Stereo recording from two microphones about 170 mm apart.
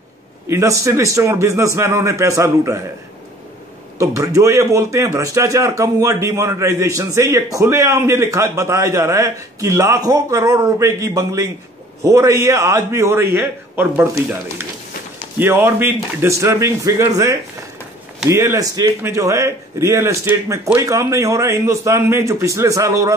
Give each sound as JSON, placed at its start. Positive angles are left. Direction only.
{"t": 0.5, "sound": "a man's voice", "side_deg": -15}
{"t": 4.0, "sound": "a man's voice", "side_deg": -20}